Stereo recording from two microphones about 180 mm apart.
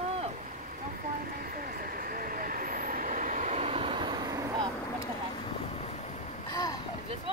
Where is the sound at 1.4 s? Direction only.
55° right (ahead or behind); by 4.7 s 20° right (ahead or behind).